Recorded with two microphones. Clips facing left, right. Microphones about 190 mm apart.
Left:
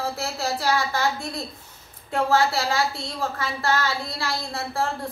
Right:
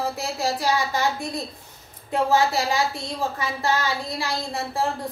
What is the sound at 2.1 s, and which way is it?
A woman's voice, 15° right (ahead or behind).